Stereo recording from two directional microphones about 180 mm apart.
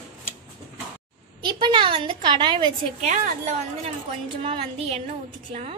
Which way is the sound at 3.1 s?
40° right (ahead or behind).